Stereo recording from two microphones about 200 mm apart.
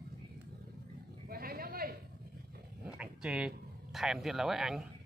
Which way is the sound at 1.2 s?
50° right (ahead or behind).